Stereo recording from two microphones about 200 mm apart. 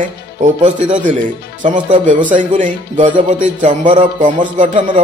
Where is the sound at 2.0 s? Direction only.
40° right (ahead or behind).